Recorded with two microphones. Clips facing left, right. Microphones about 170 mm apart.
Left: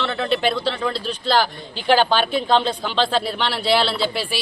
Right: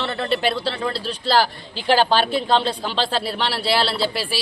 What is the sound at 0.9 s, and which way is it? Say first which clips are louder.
Speech: left 1 dB; 35° right (ahead or behind).